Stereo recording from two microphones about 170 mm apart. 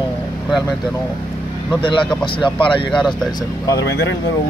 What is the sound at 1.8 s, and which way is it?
Speech, 30° left (ahead or behind).